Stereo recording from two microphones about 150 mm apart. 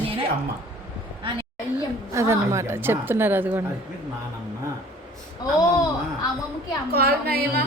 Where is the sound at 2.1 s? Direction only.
20° right (ahead or behind).